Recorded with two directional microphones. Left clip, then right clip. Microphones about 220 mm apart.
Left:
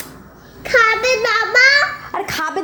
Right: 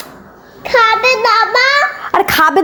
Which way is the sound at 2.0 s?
40° right (ahead or behind).